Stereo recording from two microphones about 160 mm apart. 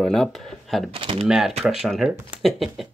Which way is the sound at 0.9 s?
35° right (ahead or behind).